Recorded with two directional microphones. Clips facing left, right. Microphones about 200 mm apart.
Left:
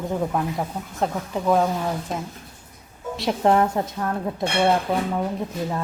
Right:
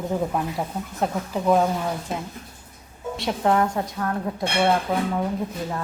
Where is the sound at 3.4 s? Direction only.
30° left (ahead or behind).